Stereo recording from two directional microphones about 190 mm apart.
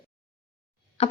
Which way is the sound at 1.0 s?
35° left (ahead or behind).